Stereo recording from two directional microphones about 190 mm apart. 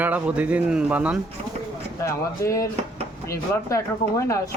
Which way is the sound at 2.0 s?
15° left (ahead or behind).